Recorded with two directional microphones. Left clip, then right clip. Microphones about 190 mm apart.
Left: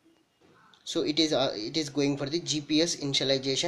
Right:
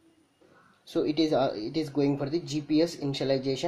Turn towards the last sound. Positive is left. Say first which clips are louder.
# left 1 dB
turn(degrees=-5)  # may be behind; listen again after turning